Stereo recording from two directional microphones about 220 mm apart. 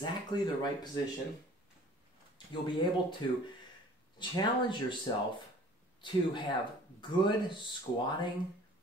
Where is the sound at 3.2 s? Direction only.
20° left (ahead or behind).